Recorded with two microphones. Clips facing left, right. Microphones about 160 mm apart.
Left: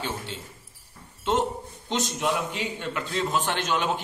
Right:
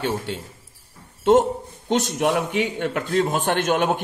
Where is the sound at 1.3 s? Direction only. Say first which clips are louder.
Right 9 dB; 50° right (ahead or behind).